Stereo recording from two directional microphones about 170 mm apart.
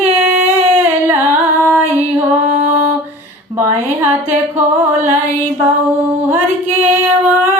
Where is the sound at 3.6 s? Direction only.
15° right (ahead or behind).